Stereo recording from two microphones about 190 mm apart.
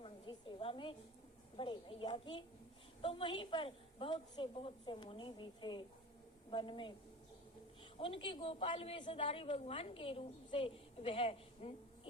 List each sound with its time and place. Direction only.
0.0 s a sound: 25° left (ahead or behind)
1.5 s a woman's voice: 25° left (ahead or behind)
7.9 s a woman's voice: 30° left (ahead or behind)